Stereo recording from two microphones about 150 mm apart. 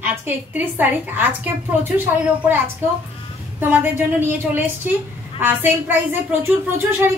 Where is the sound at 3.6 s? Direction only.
15° right (ahead or behind).